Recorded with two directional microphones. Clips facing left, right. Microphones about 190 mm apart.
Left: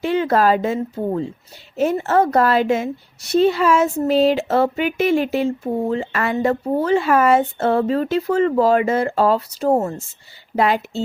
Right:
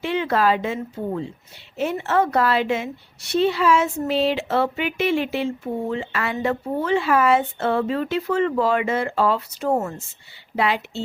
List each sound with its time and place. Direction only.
0.0 s a woman's voice: 40° left (ahead or behind)